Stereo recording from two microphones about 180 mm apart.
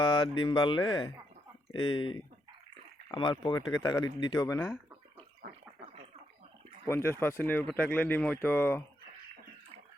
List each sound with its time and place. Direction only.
0.0 s a sound: 25° left (ahead or behind)
0.4 s speech: 25° left (ahead or behind)
6.8 s speech: 15° left (ahead or behind)